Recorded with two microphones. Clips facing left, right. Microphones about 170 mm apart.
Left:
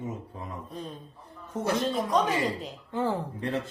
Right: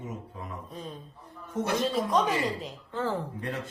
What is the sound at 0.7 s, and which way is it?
Speech, centre (ahead or behind).